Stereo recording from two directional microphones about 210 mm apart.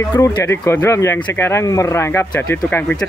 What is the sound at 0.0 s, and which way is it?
Speech, 15° left (ahead or behind).